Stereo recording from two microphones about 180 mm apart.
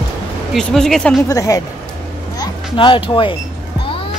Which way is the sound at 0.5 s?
5° left (ahead or behind).